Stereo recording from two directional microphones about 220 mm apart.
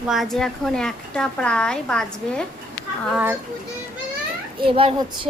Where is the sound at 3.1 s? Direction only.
10° right (ahead or behind).